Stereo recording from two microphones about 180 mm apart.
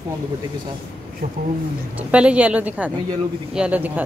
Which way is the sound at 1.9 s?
5° right (ahead or behind).